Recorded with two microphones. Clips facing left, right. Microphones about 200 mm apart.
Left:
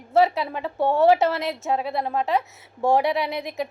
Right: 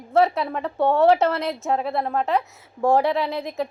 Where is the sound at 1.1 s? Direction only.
Centre (ahead or behind).